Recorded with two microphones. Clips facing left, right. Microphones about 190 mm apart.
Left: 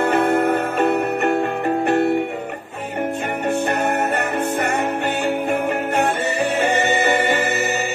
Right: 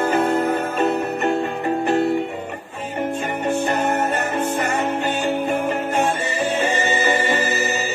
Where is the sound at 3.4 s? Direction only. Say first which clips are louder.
Even; 60° left (ahead or behind).